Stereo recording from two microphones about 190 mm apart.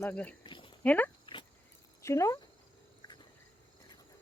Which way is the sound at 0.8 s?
10° left (ahead or behind).